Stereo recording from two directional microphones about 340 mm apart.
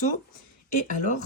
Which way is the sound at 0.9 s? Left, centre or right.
Left.